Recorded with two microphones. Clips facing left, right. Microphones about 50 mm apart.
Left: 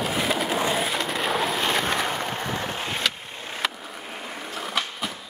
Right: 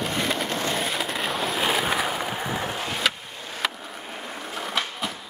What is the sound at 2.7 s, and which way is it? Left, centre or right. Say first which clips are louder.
Skateboard: even; left.